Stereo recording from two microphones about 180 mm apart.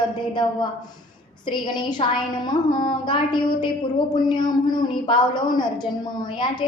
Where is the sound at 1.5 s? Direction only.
25° left (ahead or behind).